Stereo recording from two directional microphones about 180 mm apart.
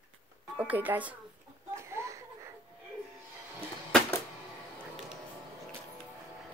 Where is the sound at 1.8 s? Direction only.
15° right (ahead or behind).